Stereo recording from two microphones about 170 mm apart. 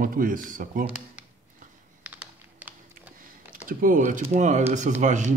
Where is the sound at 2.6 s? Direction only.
10° right (ahead or behind).